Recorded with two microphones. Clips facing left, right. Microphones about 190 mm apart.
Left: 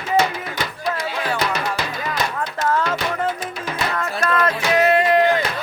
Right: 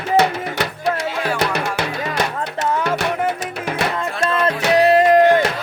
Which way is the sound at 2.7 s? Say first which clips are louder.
Right 1 dB; 10° right (ahead or behind).